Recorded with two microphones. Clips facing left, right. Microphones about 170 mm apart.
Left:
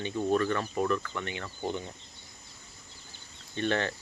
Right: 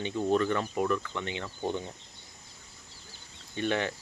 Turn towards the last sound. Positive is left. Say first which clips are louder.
# even
turn(degrees=-10)  # may be behind; listen again after turning